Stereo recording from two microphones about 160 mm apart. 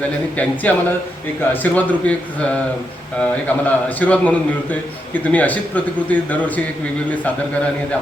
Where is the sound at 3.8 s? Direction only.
10° left (ahead or behind).